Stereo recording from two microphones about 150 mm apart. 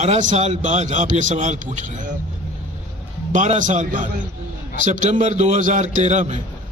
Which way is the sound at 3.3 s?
55° right (ahead or behind).